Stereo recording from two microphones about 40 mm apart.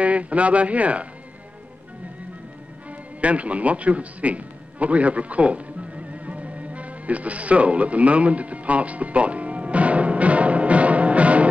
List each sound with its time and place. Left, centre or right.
0.0 s speech: right
3.2 s music: right